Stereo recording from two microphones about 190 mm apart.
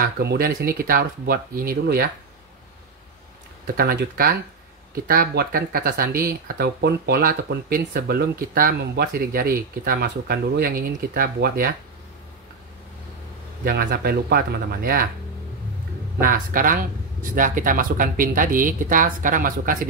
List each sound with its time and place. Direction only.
0.0 s speech: 55° right (ahead or behind)
3.6 s speech: 55° right (ahead or behind)
13.7 s speech: 55° right (ahead or behind)
16.2 s speech: 45° right (ahead or behind)